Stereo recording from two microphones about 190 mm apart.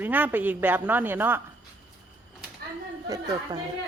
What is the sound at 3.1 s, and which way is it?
Speech, 20° right (ahead or behind).